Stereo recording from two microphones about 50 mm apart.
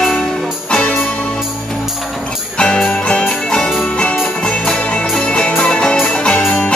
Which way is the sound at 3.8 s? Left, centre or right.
Left.